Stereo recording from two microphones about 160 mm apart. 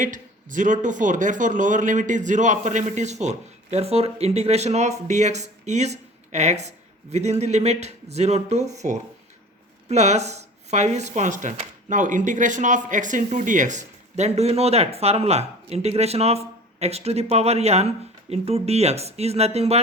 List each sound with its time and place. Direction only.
0.0 s a man's voice: 55° right (ahead or behind)